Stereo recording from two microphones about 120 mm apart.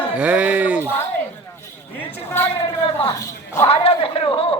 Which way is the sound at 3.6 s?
55° left (ahead or behind).